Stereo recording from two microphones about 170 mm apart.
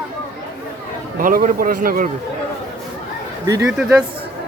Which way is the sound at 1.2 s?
55° right (ahead or behind).